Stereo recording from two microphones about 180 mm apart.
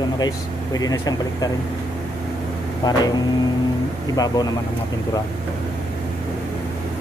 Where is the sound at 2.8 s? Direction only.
25° left (ahead or behind).